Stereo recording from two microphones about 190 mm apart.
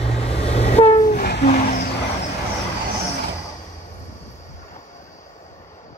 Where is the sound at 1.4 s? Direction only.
45° left (ahead or behind).